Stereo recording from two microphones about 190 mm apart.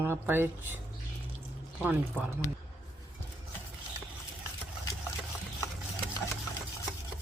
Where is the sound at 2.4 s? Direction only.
15° left (ahead or behind).